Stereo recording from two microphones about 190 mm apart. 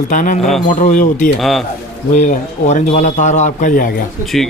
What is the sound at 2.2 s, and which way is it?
A man's voice, 40° left (ahead or behind).